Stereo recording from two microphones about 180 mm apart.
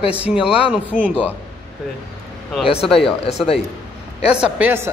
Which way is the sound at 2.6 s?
30° left (ahead or behind).